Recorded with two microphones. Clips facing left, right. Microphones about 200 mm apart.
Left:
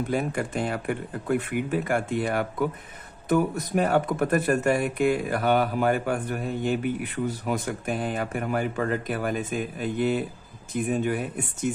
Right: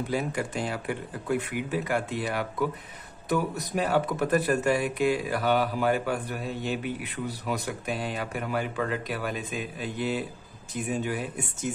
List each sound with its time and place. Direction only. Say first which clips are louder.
0.1 s speech: left 2 dB; 55° left (ahead or behind)